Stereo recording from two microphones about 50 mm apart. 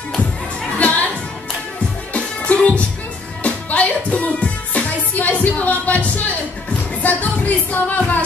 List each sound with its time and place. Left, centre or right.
0.8 s music: left
2.1 s music: left